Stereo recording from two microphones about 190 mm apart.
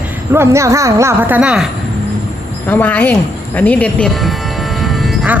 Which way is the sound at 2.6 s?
10° left (ahead or behind).